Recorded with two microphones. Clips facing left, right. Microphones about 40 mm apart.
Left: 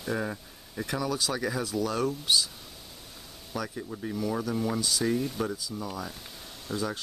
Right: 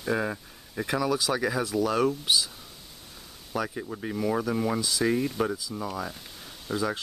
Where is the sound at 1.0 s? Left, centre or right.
Centre.